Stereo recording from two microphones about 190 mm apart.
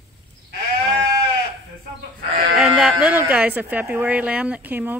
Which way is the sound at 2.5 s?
Centre (ahead or behind).